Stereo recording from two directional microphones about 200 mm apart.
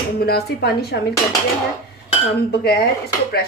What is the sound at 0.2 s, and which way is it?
Speech, 50° left (ahead or behind).